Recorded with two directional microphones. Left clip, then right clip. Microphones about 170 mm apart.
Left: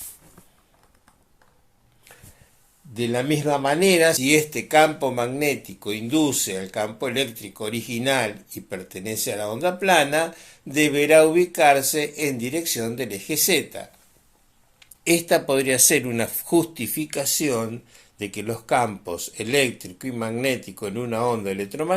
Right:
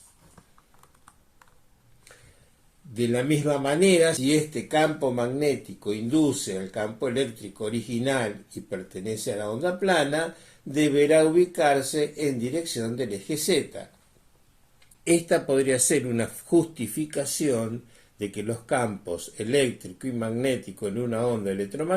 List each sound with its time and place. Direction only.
2.9 s a man's voice: 15° left (ahead or behind)
15.0 s a man's voice: 15° left (ahead or behind)